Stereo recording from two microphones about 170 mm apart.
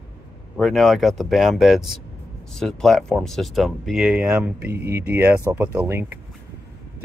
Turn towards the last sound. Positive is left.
turn(degrees=-15)  # may be behind; listen again after turning